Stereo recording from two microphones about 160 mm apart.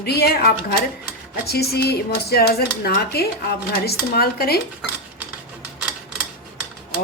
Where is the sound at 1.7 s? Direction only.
80° left.